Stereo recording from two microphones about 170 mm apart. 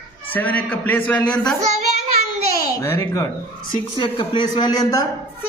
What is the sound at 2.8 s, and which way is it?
Speech, 15° left (ahead or behind).